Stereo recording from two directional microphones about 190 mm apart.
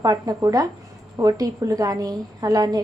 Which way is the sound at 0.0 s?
20° right (ahead or behind).